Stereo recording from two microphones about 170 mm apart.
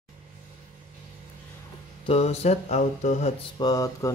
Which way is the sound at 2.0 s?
40° left (ahead or behind).